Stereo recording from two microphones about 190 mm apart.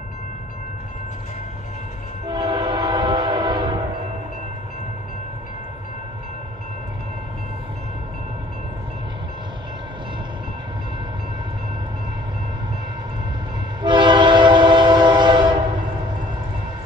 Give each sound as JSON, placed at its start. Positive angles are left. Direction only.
{"t": 2.2, "sound": "train", "side_deg": -20}
{"t": 13.8, "sound": "train", "side_deg": -25}